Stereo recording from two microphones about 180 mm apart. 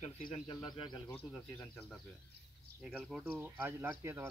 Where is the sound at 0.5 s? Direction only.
25° left (ahead or behind).